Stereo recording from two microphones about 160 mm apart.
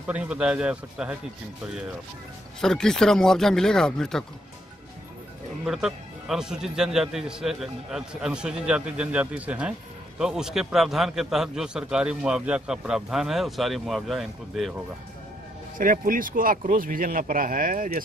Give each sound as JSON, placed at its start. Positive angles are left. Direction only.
{"t": 0.0, "sound": "a man's voice", "side_deg": -5}
{"t": 2.6, "sound": "a man's voice", "side_deg": 5}
{"t": 5.7, "sound": "a man's voice", "side_deg": -5}
{"t": 15.8, "sound": "speech", "side_deg": -60}